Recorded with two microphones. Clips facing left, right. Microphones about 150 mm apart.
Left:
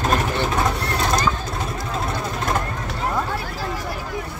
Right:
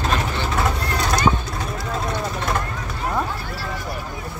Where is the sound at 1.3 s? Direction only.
30° right (ahead or behind).